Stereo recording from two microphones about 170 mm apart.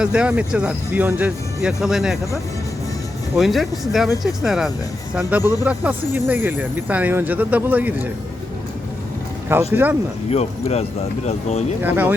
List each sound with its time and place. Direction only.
0.0 s speech: 5° right (ahead or behind)
3.3 s speech: centre (ahead or behind)
9.7 s speech: 10° right (ahead or behind)
10.2 s speech: 40° left (ahead or behind)
11.8 s speech: 10° right (ahead or behind)